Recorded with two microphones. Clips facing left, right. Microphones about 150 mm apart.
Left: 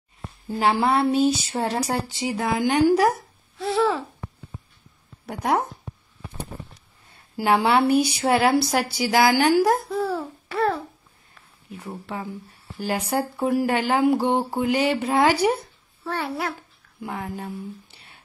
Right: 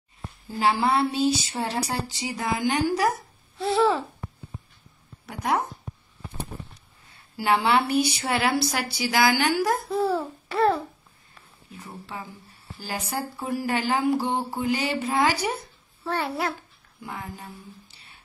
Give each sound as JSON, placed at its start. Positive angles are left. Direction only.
{"t": 0.6, "sound": "speech", "side_deg": 45}
{"t": 3.5, "sound": "babbling", "side_deg": 0}
{"t": 5.2, "sound": "speech", "side_deg": 50}
{"t": 7.3, "sound": "a woman's voice", "side_deg": 50}
{"t": 9.9, "sound": "a child's voice", "side_deg": -5}
{"t": 11.8, "sound": "speech", "side_deg": 40}
{"t": 16.1, "sound": "babbling", "side_deg": 5}
{"t": 17.0, "sound": "speech", "side_deg": 45}